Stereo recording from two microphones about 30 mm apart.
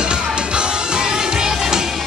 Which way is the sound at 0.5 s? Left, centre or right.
Right.